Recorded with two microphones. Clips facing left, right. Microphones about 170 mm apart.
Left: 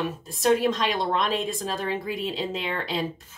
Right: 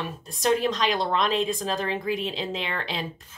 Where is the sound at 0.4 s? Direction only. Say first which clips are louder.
Left 2 dB; 5° left (ahead or behind).